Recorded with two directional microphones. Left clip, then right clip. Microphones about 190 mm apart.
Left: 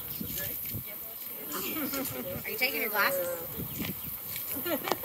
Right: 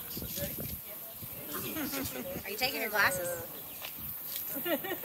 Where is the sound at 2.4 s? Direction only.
30° right (ahead or behind).